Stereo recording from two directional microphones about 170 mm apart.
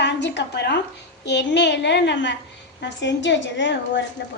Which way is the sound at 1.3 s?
90° left.